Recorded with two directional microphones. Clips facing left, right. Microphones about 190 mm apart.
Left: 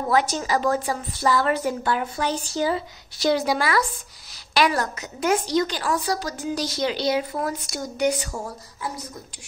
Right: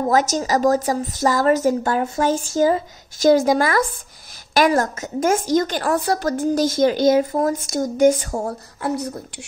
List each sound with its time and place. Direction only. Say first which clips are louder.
0.1 s a woman's voice: right 2 dB; 45° right (ahead or behind); by 9.1 s 60° right (ahead or behind)